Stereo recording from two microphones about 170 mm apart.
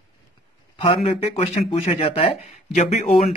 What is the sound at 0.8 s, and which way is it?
Speech, 35° left (ahead or behind).